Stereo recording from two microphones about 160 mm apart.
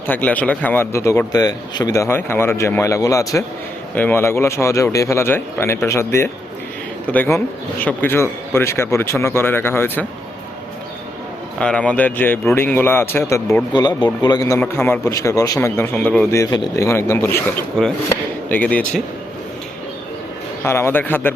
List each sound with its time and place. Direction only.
0.1 s speech: 10° left (ahead or behind)
11.6 s speech: 5° left (ahead or behind)
13.7 s speech: 30° left (ahead or behind); by 16.2 s 10° left (ahead or behind)
16.3 s speech: 20° left (ahead or behind)
20.7 s speech: 15° left (ahead or behind)